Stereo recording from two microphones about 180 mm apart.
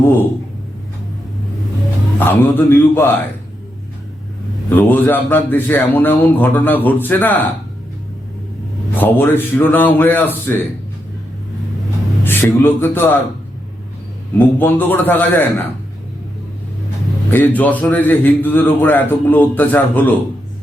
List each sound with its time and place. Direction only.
2.1 s a man's voice: 10° left (ahead or behind)
4.7 s a man's voice: 10° left (ahead or behind)
9.0 s a man's voice: 10° left (ahead or behind)
12.2 s a man's voice: 10° left (ahead or behind)
14.3 s a man's voice: 10° left (ahead or behind)
17.3 s a man's voice: 10° left (ahead or behind)